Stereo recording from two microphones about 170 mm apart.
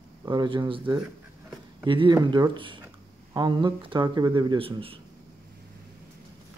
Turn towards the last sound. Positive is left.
turn(degrees=-30)  # may be behind; listen again after turning